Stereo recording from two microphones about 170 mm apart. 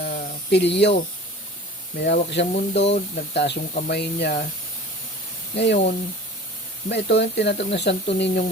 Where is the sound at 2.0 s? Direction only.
85° left.